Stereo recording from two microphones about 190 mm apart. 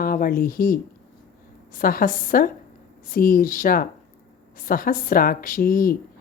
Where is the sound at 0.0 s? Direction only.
50° left (ahead or behind).